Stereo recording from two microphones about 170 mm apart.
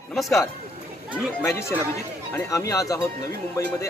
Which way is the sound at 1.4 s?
15° left (ahead or behind).